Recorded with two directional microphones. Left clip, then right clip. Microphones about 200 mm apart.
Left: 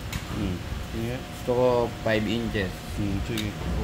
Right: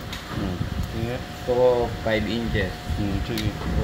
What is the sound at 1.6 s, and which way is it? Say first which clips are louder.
Speech: right 3 dB; 55° left (ahead or behind).